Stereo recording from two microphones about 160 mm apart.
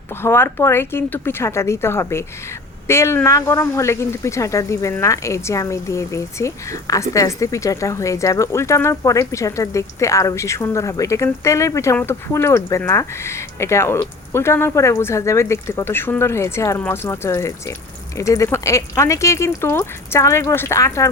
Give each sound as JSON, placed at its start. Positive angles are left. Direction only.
{"t": 0.2, "sound": "speech", "side_deg": 15}